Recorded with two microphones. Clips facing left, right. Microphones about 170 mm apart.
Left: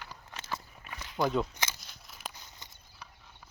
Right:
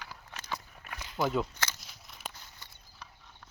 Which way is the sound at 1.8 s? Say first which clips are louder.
Even; centre (ahead or behind).